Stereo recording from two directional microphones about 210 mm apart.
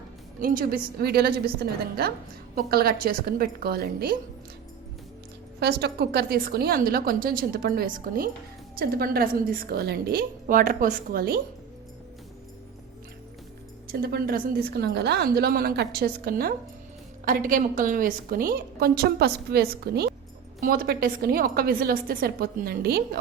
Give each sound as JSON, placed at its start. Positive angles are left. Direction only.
{"t": 0.3, "sound": "a woman's voice", "side_deg": -40}
{"t": 5.5, "sound": "a woman's voice", "side_deg": -50}
{"t": 13.9, "sound": "a woman's voice", "side_deg": -45}